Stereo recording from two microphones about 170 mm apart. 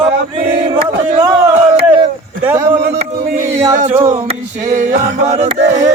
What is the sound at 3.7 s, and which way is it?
Male singing, 45° right (ahead or behind).